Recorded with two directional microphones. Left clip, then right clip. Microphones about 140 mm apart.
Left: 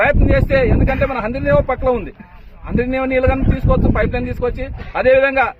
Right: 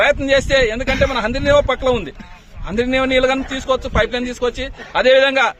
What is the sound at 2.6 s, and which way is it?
A man's voice, 25° right (ahead or behind).